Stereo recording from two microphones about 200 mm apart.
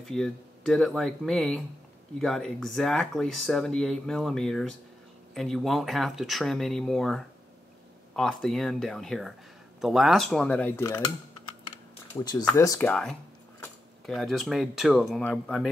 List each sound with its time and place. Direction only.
0.0 s speech: centre (ahead or behind)
12.2 s speech: 20° left (ahead or behind)
14.0 s speech: centre (ahead or behind)